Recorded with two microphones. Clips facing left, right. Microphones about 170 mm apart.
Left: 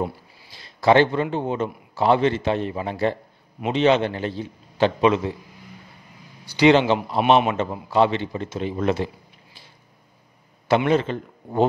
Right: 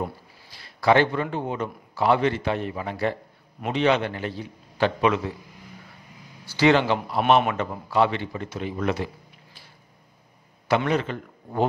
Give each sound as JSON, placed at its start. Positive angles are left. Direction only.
{"t": 0.0, "sound": "a man's voice", "side_deg": 20}
{"t": 6.4, "sound": "a man's voice", "side_deg": 15}
{"t": 10.9, "sound": "a man's voice", "side_deg": 25}